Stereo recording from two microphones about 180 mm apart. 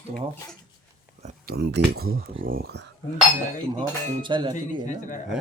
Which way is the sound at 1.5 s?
65° right (ahead or behind).